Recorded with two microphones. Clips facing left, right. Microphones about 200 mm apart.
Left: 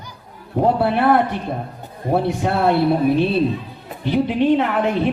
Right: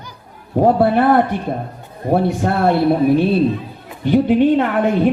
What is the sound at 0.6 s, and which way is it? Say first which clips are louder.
A woman's voice: right 3 dB; 50° right (ahead or behind).